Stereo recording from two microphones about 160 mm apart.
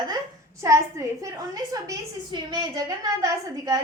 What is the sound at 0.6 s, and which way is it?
A woman's voice, 20° right (ahead or behind).